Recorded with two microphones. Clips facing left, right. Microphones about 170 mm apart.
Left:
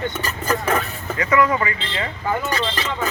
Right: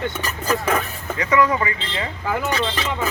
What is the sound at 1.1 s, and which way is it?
Speech, 20° right (ahead or behind).